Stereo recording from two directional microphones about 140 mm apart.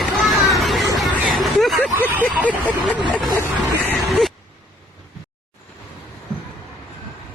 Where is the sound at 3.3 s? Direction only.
25° right (ahead or behind).